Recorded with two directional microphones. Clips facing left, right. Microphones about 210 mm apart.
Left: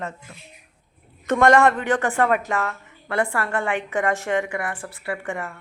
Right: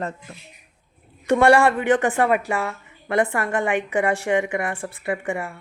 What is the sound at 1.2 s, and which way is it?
A woman's voice, 10° right (ahead or behind).